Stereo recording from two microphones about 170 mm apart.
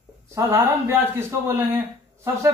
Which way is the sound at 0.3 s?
15° right (ahead or behind).